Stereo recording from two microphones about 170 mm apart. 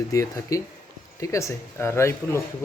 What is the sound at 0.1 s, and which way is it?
Speech, 20° left (ahead or behind).